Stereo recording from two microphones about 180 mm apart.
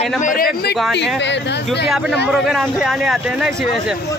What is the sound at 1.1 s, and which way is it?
Speech, 75° left (ahead or behind).